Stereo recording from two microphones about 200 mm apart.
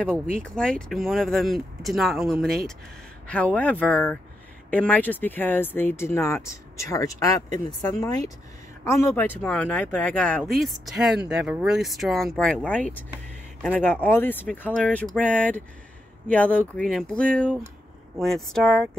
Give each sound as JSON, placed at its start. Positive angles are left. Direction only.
{"t": 0.4, "sound": "speech", "side_deg": 5}